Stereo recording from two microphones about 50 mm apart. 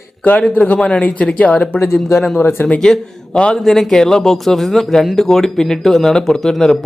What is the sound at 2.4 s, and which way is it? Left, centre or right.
Speech, left.